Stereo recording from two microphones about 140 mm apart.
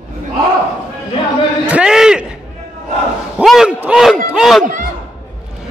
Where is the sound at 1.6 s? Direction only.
5° right (ahead or behind).